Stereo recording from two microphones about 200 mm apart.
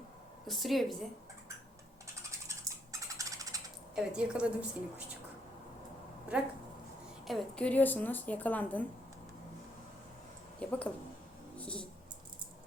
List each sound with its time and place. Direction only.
0.4 s a woman's voice: centre (ahead or behind)
2.5 s a sound: 15° right (ahead or behind)
3.9 s a woman's voice: 5° right (ahead or behind)
6.3 s a woman's voice: 5° right (ahead or behind)
10.6 s a woman's voice: 5° left (ahead or behind)
11.5 s a sound: 5° left (ahead or behind)